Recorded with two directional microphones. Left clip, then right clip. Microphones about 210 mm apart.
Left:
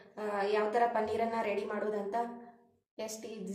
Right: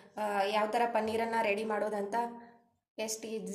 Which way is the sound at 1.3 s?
40° right (ahead or behind).